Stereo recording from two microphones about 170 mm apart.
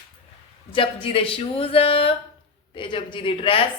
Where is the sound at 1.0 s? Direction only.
30° left (ahead or behind).